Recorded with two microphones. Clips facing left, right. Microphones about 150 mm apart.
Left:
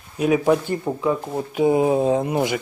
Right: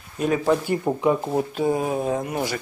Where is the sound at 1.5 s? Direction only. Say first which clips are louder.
Left 5 dB; 15° left (ahead or behind).